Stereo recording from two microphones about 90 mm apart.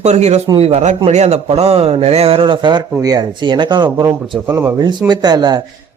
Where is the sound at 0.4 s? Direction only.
60° right (ahead or behind).